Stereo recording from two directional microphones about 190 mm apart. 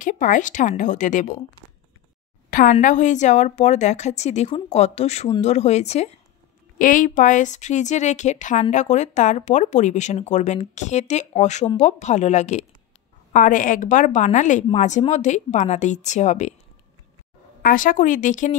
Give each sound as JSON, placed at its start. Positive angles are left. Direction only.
{"t": 0.0, "sound": "a woman's voice", "side_deg": 45}
{"t": 2.5, "sound": "speech", "side_deg": 45}
{"t": 17.6, "sound": "a woman's voice", "side_deg": 50}